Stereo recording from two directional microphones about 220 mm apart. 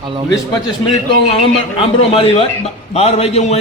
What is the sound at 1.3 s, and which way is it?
A man's voice, 25° left (ahead or behind).